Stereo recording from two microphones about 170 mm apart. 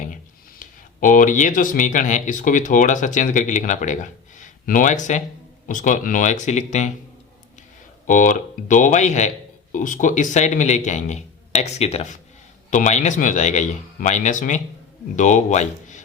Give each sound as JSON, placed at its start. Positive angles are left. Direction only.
{"t": 0.6, "sound": "speech", "side_deg": 50}
{"t": 8.0, "sound": "speech", "side_deg": 50}